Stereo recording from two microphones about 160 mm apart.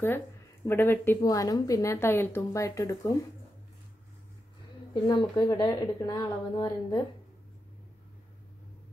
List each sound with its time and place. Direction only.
0.7 s a woman's voice: 15° left (ahead or behind)
5.0 s a woman's voice: 25° left (ahead or behind)